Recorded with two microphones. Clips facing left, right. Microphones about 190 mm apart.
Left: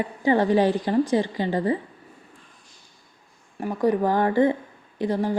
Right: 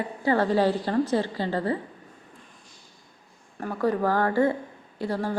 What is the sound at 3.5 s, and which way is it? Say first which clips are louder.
A woman's voice: left 3 dB; 15° left (ahead or behind).